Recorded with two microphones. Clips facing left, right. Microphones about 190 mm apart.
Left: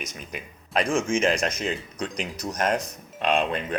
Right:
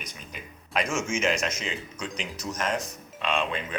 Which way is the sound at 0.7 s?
30° left (ahead or behind).